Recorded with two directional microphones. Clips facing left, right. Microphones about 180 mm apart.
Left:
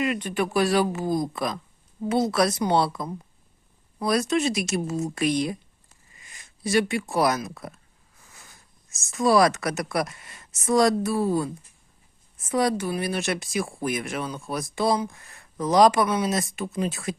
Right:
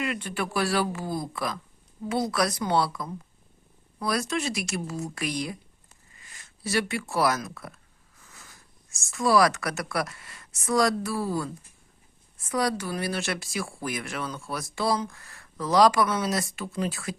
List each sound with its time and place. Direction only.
0.0 s speech: 20° left (ahead or behind)
12.5 s speech: 20° left (ahead or behind)